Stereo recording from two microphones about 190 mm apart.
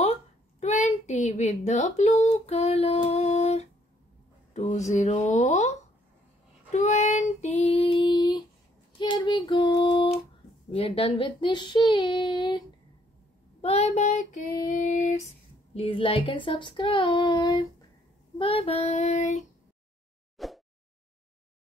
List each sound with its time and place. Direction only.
0.6 s a woman's voice: 35° left (ahead or behind)
4.9 s child singing: 40° left (ahead or behind)
7.2 s female singing: 35° left (ahead or behind)
8.9 s child singing: 25° left (ahead or behind)
10.7 s speech: 30° left (ahead or behind)
13.6 s child singing: 35° left (ahead or behind)
15.7 s speech: 30° left (ahead or behind)
18.4 s child singing: 30° left (ahead or behind)
20.3 s a sound: centre (ahead or behind)